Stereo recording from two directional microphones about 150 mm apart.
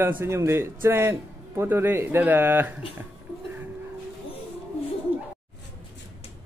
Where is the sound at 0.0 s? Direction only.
15° right (ahead or behind).